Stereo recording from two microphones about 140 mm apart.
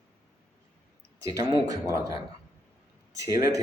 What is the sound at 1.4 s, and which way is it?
Speech, 25° right (ahead or behind).